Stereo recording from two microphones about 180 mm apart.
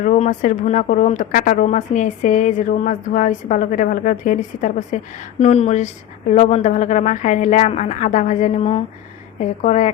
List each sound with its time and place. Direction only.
0.0 s speech: 45° left (ahead or behind)